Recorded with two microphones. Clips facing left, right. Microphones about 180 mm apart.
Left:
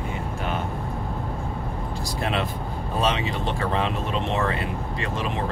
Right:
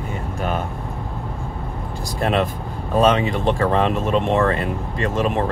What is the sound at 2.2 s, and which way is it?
Speech, 45° right (ahead or behind).